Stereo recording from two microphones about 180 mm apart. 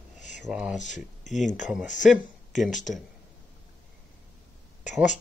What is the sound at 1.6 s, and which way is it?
Speech, centre (ahead or behind).